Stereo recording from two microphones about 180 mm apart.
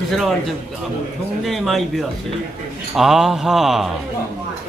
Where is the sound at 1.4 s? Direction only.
Centre (ahead or behind).